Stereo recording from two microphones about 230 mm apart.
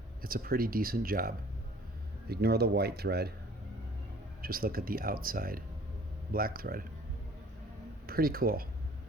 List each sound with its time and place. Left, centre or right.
0.2 s speech: right
2.3 s speech: right
4.4 s speech: right
8.0 s speech: right